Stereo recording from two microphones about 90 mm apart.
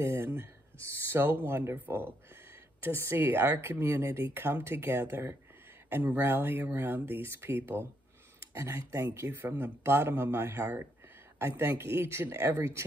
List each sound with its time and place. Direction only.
0.0 s speech: 30° right (ahead or behind)